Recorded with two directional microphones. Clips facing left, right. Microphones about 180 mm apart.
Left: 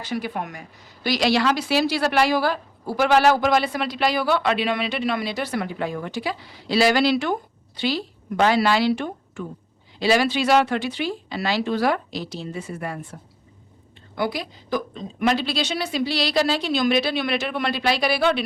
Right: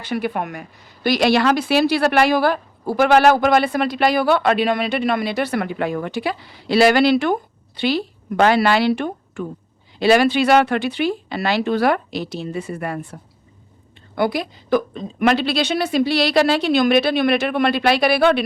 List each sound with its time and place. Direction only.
0.0 s a woman's voice: 60° right (ahead or behind)
14.2 s a woman's voice: 55° right (ahead or behind)